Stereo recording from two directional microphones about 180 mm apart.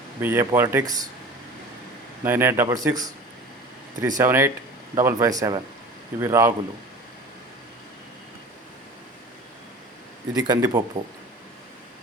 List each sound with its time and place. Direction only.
0.2 s speech: 10° right (ahead or behind)
2.2 s speech: 10° right (ahead or behind)
10.3 s speech: 20° right (ahead or behind)